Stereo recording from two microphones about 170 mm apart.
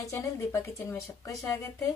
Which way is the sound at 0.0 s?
20° left (ahead or behind).